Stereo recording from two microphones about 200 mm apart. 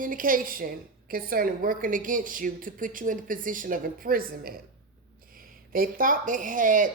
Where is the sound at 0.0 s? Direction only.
45° right (ahead or behind).